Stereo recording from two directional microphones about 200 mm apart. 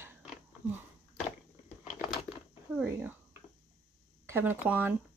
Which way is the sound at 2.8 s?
5° right (ahead or behind).